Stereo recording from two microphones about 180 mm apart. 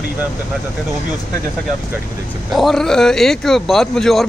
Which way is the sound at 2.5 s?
Centre (ahead or behind).